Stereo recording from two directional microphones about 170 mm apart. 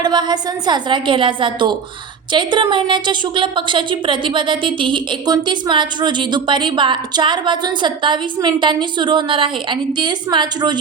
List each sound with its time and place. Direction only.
0.0 s a woman's voice: 25° right (ahead or behind)